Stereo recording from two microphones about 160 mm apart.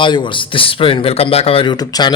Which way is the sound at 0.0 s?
30° left (ahead or behind).